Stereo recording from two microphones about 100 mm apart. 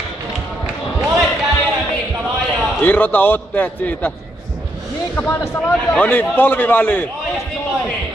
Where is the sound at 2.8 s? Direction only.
15° left (ahead or behind).